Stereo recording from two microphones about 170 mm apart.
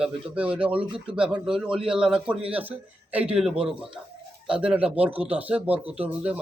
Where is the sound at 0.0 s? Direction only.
5° right (ahead or behind).